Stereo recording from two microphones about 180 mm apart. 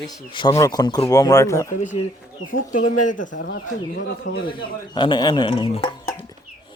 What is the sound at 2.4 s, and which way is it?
Speech, 50° left (ahead or behind).